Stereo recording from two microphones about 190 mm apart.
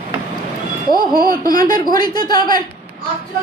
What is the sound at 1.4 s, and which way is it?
Speech, 20° left (ahead or behind).